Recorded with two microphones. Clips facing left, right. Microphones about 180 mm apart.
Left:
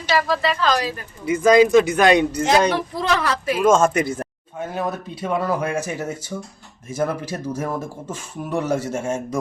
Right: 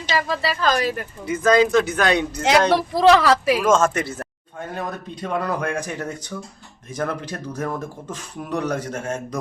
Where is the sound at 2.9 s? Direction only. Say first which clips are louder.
Right 7 dB; 90° right.